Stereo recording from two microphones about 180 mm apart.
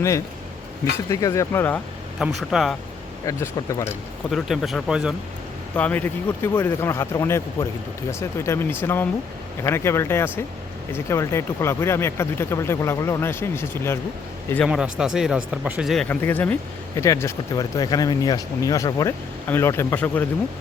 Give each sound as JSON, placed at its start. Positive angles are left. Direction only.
{"t": 1.1, "sound": "speech", "side_deg": 20}
{"t": 2.1, "sound": "speech", "side_deg": 0}
{"t": 3.2, "sound": "speech", "side_deg": 15}
{"t": 4.3, "sound": "speech", "side_deg": 0}
{"t": 5.7, "sound": "speech", "side_deg": 10}
{"t": 14.7, "sound": "speech", "side_deg": -5}
{"t": 16.0, "sound": "speech", "side_deg": 10}